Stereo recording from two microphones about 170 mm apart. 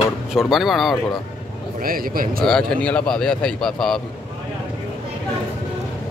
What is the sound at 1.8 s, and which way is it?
Speech, 60° right (ahead or behind).